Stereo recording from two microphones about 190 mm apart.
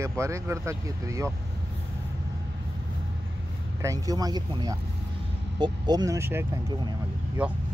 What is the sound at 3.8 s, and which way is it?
Speech, 20° right (ahead or behind).